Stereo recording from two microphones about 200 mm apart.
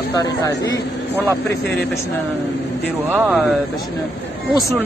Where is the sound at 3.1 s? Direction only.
10° right (ahead or behind).